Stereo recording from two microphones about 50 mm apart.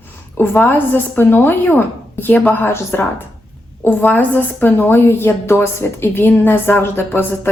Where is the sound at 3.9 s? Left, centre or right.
Left.